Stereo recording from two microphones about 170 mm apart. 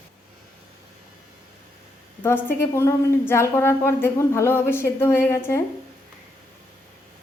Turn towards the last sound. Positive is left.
turn(degrees=15)  # may be behind; listen again after turning